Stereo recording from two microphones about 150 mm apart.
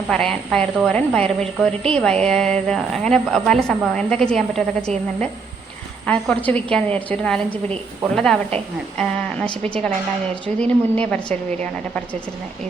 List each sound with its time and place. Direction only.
0.1 s a woman's voice: 5° left (ahead or behind)